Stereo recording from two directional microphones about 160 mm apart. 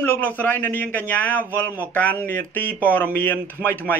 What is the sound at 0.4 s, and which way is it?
Speech, 10° left (ahead or behind).